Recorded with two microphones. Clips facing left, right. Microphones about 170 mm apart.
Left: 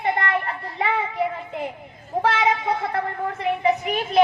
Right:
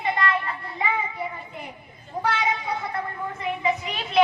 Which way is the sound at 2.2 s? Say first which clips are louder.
Left 4 dB; 90° left.